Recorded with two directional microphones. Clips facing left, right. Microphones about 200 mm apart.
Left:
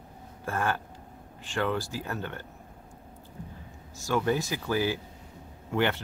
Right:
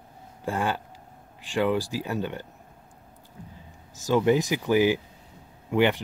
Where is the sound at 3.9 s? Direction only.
20° right (ahead or behind).